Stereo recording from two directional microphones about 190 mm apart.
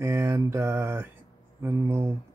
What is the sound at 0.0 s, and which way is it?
Speech, 15° right (ahead or behind).